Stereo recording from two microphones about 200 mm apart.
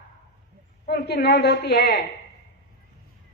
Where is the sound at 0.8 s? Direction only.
55° left (ahead or behind).